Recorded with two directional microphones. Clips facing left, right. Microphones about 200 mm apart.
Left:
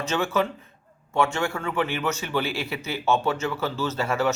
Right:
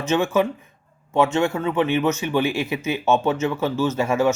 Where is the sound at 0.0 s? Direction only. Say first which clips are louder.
Right 5 dB; 20° right (ahead or behind).